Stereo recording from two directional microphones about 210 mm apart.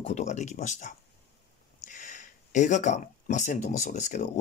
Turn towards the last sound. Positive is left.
turn(degrees=35)  # may be behind; listen again after turning